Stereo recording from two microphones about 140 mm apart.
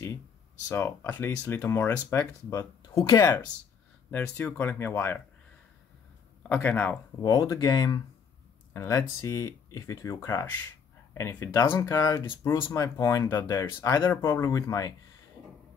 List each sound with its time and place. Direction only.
0.7 s speech: 15° left (ahead or behind)
4.1 s speech: 15° left (ahead or behind)
6.5 s speech: 10° left (ahead or behind)
7.2 s speech: 25° left (ahead or behind)